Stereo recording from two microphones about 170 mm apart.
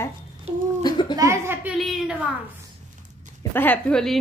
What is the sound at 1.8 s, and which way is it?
Speech, centre (ahead or behind).